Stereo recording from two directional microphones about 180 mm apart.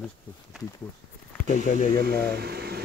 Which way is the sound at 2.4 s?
60° right (ahead or behind).